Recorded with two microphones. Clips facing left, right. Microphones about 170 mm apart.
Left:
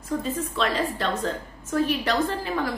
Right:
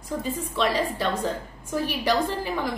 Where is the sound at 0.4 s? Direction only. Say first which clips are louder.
Right 4 dB; 10° right (ahead or behind).